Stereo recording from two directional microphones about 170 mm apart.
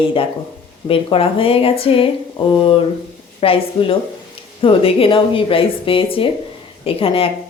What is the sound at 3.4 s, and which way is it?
A woman's voice, 35° left (ahead or behind).